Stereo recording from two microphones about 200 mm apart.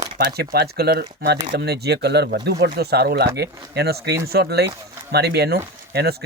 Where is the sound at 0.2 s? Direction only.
50° right (ahead or behind).